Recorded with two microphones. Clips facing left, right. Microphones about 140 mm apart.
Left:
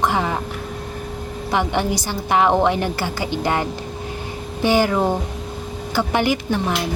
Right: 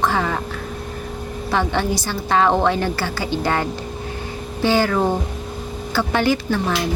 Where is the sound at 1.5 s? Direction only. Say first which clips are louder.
Even; 15° left (ahead or behind).